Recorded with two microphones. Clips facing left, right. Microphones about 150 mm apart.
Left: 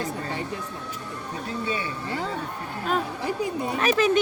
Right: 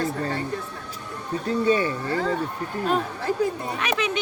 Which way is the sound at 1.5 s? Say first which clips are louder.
Right 9 dB; 40° right (ahead or behind).